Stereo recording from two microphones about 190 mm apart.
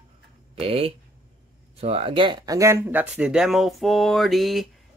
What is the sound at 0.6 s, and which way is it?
Speech, 30° right (ahead or behind).